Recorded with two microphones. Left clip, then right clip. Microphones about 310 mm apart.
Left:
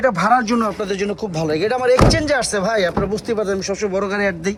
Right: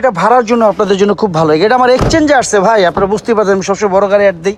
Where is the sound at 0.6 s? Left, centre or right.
Right.